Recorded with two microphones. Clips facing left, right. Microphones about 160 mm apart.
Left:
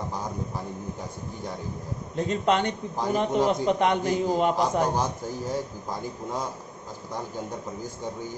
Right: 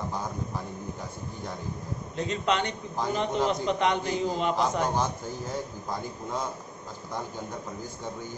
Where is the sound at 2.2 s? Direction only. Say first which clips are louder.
Left 4 dB; 50° left (ahead or behind).